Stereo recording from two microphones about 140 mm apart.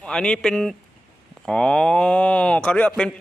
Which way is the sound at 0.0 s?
5° left (ahead or behind).